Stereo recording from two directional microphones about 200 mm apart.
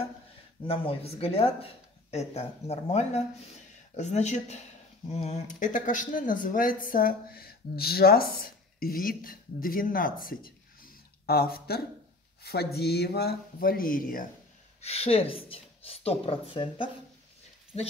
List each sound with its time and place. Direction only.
0.7 s speech: 30° left (ahead or behind)
14.8 s a woman's voice: 30° left (ahead or behind)